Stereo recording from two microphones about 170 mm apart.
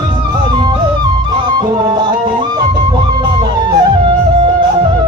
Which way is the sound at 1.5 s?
25° right (ahead or behind).